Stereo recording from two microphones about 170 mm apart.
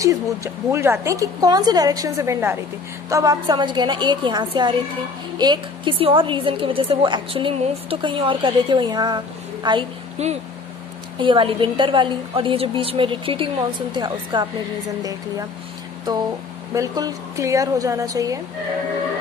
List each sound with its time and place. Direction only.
0.0 s a woman's voice: 20° right (ahead or behind)
10.1 s a woman's voice: 40° right (ahead or behind)
16.7 s a woman's voice: 20° right (ahead or behind)